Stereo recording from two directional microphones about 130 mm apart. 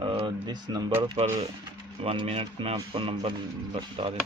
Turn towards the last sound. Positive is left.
turn(degrees=-45)  # may be behind; listen again after turning